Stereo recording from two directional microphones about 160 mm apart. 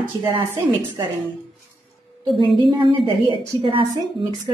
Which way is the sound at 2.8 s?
30° right (ahead or behind).